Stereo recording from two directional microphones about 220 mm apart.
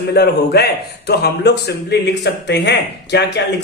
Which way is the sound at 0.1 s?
45° left (ahead or behind).